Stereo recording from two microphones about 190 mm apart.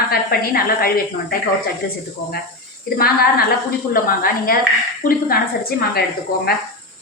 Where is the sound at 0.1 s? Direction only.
50° left (ahead or behind).